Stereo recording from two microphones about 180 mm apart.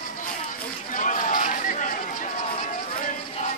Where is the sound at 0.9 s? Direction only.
45° left (ahead or behind).